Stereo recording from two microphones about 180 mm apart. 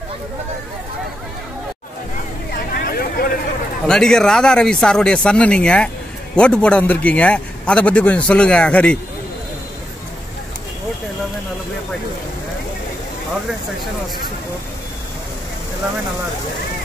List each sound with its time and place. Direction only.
2.5 s vehicle: 55° left (ahead or behind)
3.8 s a man's voice: 5° left (ahead or behind)